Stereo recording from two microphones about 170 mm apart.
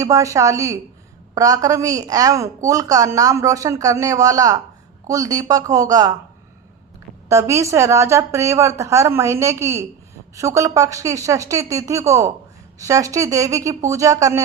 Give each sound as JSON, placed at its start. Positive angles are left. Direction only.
{"t": 0.0, "sound": "a woman's voice", "side_deg": -20}
{"t": 7.3, "sound": "a woman's voice", "side_deg": -15}